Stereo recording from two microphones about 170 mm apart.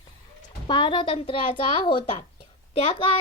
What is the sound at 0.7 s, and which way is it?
A child's voice, 30° left (ahead or behind).